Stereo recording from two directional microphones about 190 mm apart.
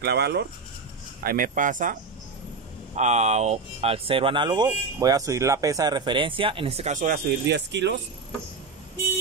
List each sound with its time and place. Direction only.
0.0 s speech: 60° right (ahead or behind)
1.2 s speech: 50° right (ahead or behind)
3.0 s speech: 35° right (ahead or behind)
6.9 s speech: 45° right (ahead or behind)
7.2 s speech: 65° right (ahead or behind)